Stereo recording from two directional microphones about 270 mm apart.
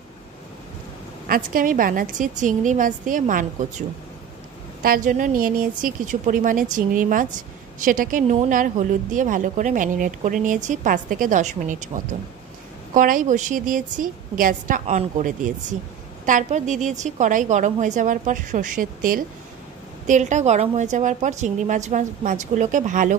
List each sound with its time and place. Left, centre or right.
1.2 s a woman's voice: right
4.8 s a woman's voice: right